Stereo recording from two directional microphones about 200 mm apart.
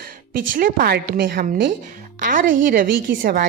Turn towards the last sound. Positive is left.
turn(degrees=-45)  # may be behind; listen again after turning